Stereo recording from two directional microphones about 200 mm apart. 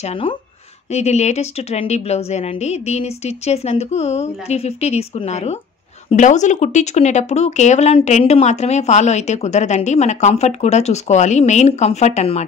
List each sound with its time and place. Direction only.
0.0 s speech: 25° left (ahead or behind)